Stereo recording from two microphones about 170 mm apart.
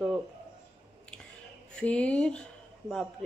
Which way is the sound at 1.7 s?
5° left (ahead or behind).